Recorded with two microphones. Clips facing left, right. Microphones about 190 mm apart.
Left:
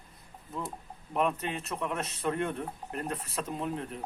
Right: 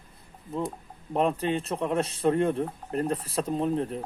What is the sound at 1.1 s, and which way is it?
Speech, 30° right (ahead or behind).